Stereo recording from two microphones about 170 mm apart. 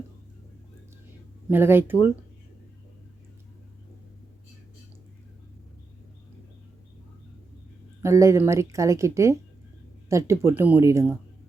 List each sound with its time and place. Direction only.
1.5 s speech: 10° right (ahead or behind)
8.0 s speech: 15° right (ahead or behind)